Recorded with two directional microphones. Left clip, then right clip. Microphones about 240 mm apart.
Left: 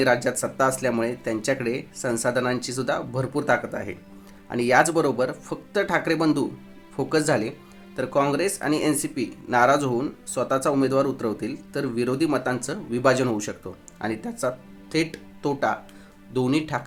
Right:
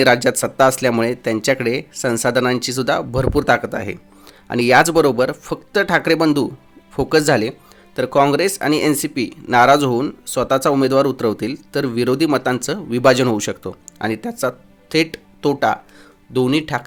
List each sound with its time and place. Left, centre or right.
0.0 s speech: right